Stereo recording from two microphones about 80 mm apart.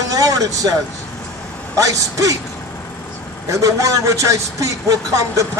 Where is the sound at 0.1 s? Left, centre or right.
Right.